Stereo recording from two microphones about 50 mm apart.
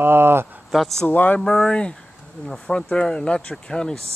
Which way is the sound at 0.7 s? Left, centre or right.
Centre.